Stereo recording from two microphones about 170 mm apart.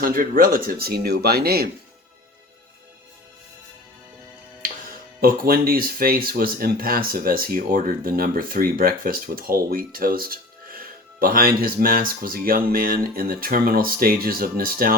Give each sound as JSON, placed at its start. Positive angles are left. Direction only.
{"t": 0.0, "sound": "speech", "side_deg": -55}
{"t": 5.2, "sound": "speech", "side_deg": -60}